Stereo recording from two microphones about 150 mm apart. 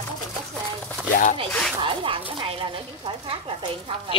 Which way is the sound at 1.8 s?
35° right (ahead or behind).